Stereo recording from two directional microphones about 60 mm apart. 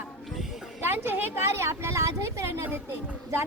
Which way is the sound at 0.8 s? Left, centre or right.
Right.